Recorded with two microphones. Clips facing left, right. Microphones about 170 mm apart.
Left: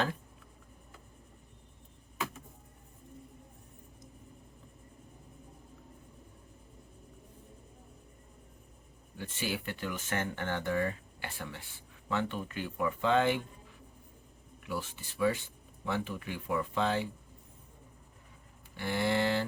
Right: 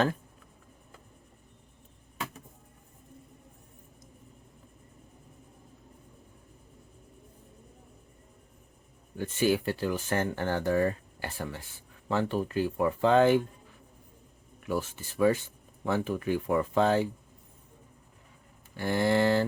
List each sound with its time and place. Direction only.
9.1 s speech: 45° right (ahead or behind)
14.7 s speech: 45° right (ahead or behind)
18.8 s speech: 45° right (ahead or behind)